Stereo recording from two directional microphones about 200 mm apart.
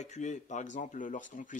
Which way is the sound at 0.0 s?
35° left (ahead or behind).